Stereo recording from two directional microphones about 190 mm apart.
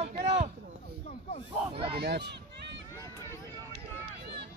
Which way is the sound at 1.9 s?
60° right (ahead or behind).